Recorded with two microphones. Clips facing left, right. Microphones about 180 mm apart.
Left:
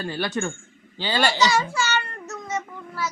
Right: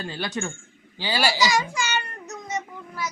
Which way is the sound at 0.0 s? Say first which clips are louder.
Left 3 dB; 20° right (ahead or behind).